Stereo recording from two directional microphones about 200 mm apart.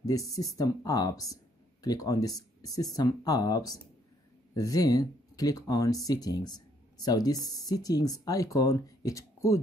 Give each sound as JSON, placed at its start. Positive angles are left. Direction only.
{"t": 0.0, "sound": "speech", "side_deg": 15}